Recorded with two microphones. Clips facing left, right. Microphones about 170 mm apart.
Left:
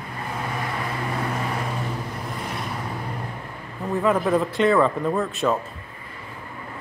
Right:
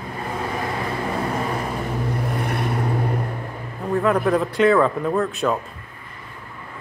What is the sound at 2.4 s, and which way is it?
Vehicle, 60° right (ahead or behind).